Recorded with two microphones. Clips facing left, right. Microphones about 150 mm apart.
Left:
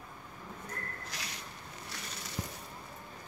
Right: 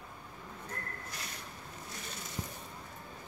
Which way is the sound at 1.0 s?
90° left.